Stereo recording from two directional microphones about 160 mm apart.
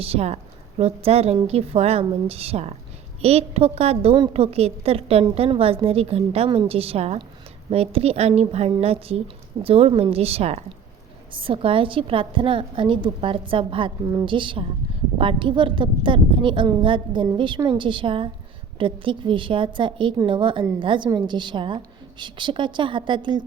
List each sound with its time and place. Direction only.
0.0 s a woman's voice: 40° right (ahead or behind)